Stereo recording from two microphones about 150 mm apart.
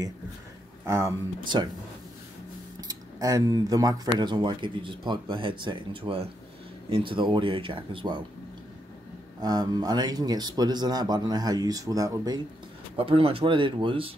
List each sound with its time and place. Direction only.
0.8 s speech: 20° right (ahead or behind)
2.9 s speech: 25° right (ahead or behind)
9.4 s speech: 25° right (ahead or behind)
12.9 s speech: 40° right (ahead or behind)